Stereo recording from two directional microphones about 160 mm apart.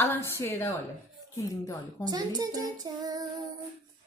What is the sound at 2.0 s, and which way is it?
A child's voice, 25° right (ahead or behind).